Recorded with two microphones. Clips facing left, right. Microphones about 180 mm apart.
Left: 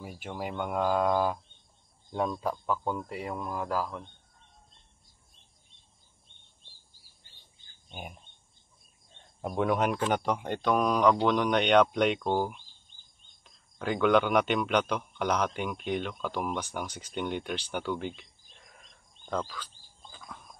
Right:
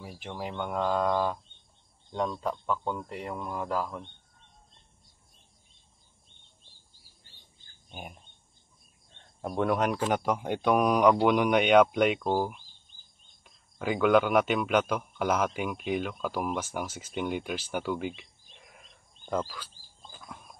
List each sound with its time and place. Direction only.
0.0 s a man's voice: centre (ahead or behind)
9.4 s a man's voice: centre (ahead or behind)
19.2 s a sound: 5° right (ahead or behind)